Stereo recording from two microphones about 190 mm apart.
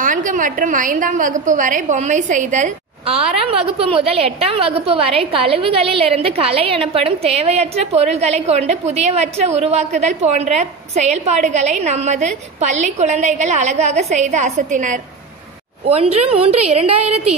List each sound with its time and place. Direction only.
0.0 s a woman's voice: 45° right (ahead or behind)